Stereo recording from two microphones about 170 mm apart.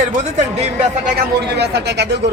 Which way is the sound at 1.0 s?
80° right.